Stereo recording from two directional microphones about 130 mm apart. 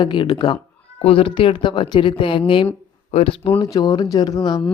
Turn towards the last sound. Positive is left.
turn(degrees=35)  # may be behind; listen again after turning